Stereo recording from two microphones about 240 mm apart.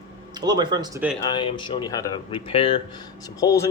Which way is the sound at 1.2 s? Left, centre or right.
Centre.